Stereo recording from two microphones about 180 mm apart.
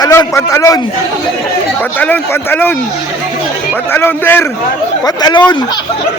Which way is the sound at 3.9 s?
10° left (ahead or behind).